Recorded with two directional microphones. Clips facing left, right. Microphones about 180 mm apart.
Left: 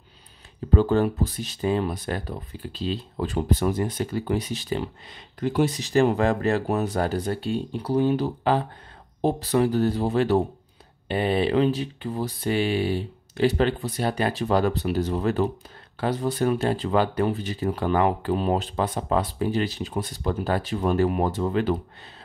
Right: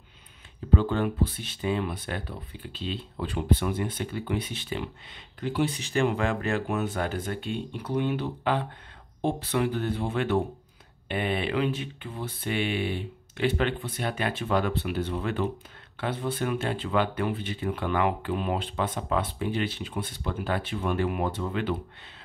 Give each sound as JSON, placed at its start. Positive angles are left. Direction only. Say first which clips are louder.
{"t": 0.7, "sound": "speech", "louder": "left 5 dB", "side_deg": 40}